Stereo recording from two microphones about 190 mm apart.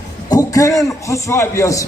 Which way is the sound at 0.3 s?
20° left (ahead or behind).